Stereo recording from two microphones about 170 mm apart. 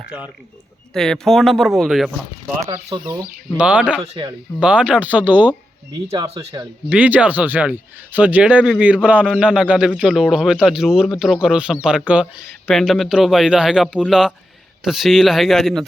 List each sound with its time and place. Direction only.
0.9 s a man's voice: 5° left (ahead or behind)
2.6 s speech: 20° right (ahead or behind)
3.6 s speech: 5° right (ahead or behind)
4.0 s speech: 35° right (ahead or behind)
4.6 s a man's voice: 5° right (ahead or behind)